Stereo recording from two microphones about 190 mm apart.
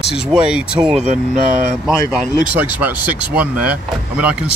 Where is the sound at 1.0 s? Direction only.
40° right (ahead or behind).